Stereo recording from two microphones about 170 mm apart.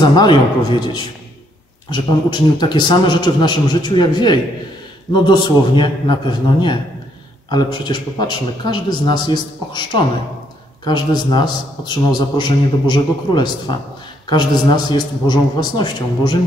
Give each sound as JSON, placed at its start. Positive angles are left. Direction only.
{"t": 0.0, "sound": "a man's voice", "side_deg": 25}
{"t": 7.4, "sound": "a man's voice", "side_deg": 25}